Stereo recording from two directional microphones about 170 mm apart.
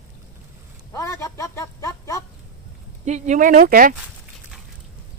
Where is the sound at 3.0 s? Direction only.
45° right (ahead or behind).